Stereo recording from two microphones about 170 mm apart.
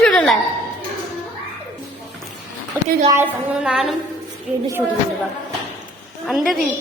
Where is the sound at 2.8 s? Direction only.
15° right (ahead or behind).